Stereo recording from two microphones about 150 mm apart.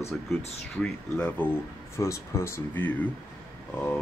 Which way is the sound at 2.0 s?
20° left (ahead or behind).